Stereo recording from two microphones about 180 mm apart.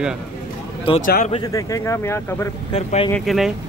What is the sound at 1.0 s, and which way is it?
Speech, 50° left (ahead or behind).